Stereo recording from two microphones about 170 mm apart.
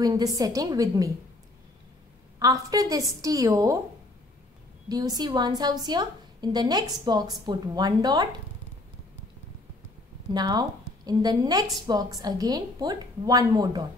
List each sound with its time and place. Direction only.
0.0 s a woman's voice: 20° right (ahead or behind)
2.3 s a woman's voice: 20° right (ahead or behind)
4.8 s a woman's voice: 25° right (ahead or behind)
10.3 s a woman's voice: 25° right (ahead or behind)